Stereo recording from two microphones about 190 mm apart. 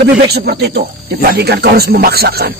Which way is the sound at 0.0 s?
60° right (ahead or behind).